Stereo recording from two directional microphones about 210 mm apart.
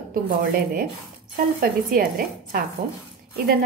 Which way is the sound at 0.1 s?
45° right (ahead or behind).